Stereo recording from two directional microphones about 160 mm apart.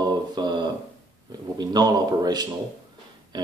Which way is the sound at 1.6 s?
25° right (ahead or behind).